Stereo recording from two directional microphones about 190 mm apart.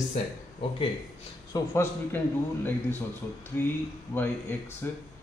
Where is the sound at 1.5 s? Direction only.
15° left (ahead or behind).